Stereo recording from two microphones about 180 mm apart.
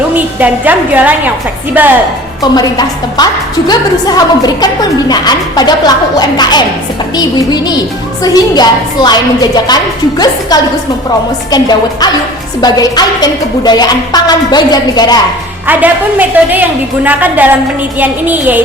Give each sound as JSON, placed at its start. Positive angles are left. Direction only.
{"t": 0.3, "sound": "a woman's voice", "side_deg": -10}
{"t": 2.4, "sound": "a woman's voice", "side_deg": 20}
{"t": 15.6, "sound": "a woman's voice", "side_deg": -10}